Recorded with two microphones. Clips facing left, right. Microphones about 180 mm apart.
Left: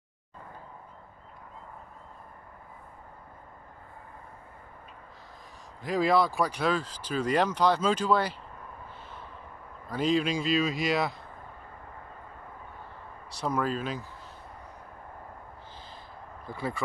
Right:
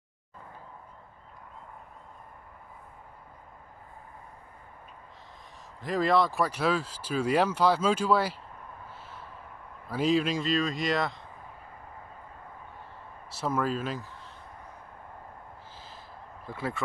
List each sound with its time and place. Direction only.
5.8 s speech: centre (ahead or behind)
9.8 s speech: 5° right (ahead or behind)
13.3 s speech: 5° right (ahead or behind)
16.4 s speech: centre (ahead or behind)